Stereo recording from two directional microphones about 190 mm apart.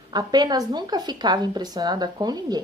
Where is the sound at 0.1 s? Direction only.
20° right (ahead or behind).